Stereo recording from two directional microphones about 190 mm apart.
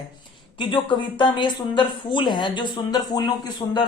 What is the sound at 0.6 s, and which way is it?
Speech, 25° left (ahead or behind).